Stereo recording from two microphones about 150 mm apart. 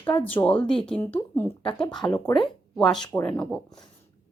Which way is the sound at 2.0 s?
15° left (ahead or behind).